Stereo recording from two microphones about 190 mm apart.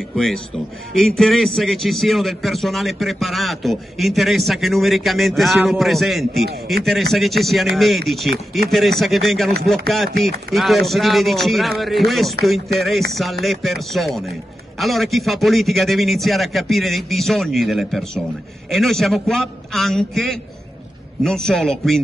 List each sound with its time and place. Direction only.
0.1 s a man's voice: centre (ahead or behind)